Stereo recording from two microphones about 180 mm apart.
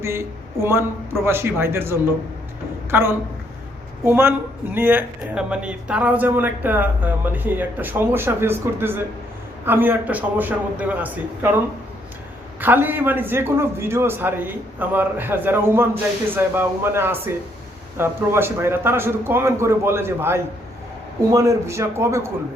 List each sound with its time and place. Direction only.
0.0 s speech: 15° right (ahead or behind)
12.5 s speech: 10° right (ahead or behind)